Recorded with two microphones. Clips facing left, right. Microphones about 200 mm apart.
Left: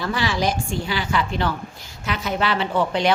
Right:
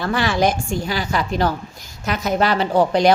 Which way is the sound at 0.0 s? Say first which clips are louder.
Right 4 dB; 55° right (ahead or behind).